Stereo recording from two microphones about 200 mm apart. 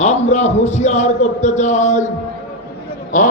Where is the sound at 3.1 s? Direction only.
40° left (ahead or behind).